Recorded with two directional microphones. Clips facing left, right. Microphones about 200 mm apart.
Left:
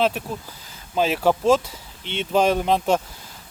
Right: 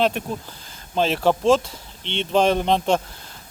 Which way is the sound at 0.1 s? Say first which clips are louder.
Right 2 dB; 5° left (ahead or behind).